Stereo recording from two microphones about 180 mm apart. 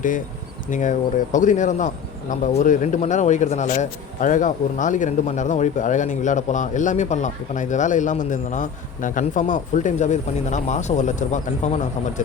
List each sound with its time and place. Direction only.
0.7 s a man's voice: 45° left (ahead or behind)